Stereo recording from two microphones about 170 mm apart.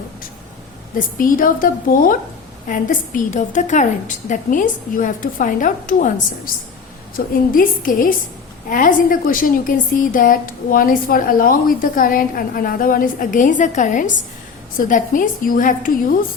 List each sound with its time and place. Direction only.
0.9 s a woman's voice: 55° left (ahead or behind)